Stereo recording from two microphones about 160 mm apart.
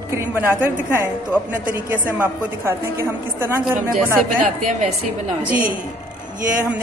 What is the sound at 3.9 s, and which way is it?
Speech, 55° right (ahead or behind).